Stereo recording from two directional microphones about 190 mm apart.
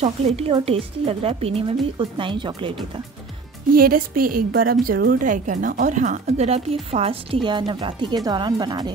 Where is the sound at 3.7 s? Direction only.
50° right (ahead or behind); by 8.9 s 20° right (ahead or behind).